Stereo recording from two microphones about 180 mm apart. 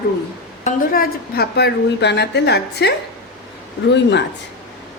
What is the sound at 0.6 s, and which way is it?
Speech, 50° left (ahead or behind).